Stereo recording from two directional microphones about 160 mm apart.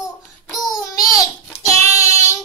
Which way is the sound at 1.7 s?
20° left (ahead or behind).